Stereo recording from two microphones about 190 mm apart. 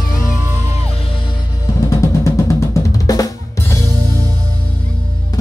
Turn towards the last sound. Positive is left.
turn(degrees=20)  # may be behind; listen again after turning